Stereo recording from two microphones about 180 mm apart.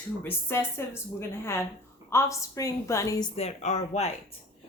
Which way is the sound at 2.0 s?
15° left (ahead or behind).